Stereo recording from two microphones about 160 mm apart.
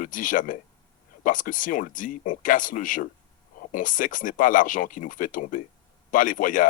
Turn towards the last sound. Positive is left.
turn(degrees=55)  # may be behind; listen again after turning